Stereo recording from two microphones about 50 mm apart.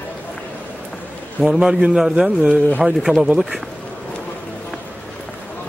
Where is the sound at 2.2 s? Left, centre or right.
Right.